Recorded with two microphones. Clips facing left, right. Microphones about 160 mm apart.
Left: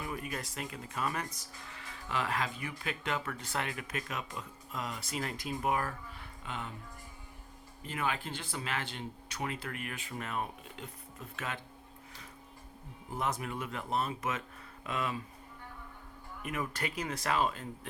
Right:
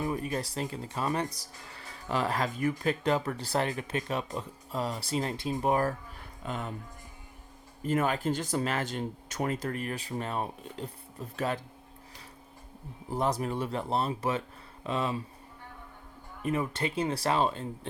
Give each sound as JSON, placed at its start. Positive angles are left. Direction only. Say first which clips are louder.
{"t": 0.0, "sound": "speech", "louder": "right 7 dB", "side_deg": -30}
{"t": 7.9, "sound": "speech", "louder": "right 8 dB", "side_deg": -45}
{"t": 13.1, "sound": "speech", "louder": "right 6 dB", "side_deg": -35}
{"t": 16.4, "sound": "speech", "louder": "right 7 dB", "side_deg": -30}